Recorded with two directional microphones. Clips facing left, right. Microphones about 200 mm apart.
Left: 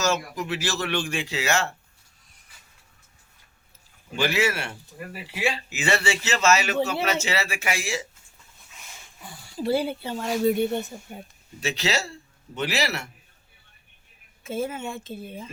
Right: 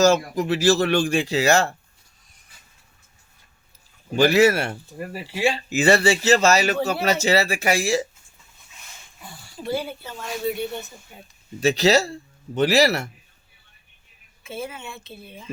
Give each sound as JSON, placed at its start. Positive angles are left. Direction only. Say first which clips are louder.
{"t": 0.0, "sound": "speech", "louder": "right 8 dB", "side_deg": -35}
{"t": 4.1, "sound": "speech", "louder": "right 8 dB", "side_deg": -40}
{"t": 9.6, "sound": "speech", "louder": "left 3 dB", "side_deg": 30}
{"t": 10.5, "sound": "a woman's voice", "louder": "left 5 dB", "side_deg": 50}
{"t": 11.6, "sound": "speech", "louder": "right 9 dB", "side_deg": -40}
{"t": 14.4, "sound": "a woman's voice", "louder": "left 4 dB", "side_deg": 45}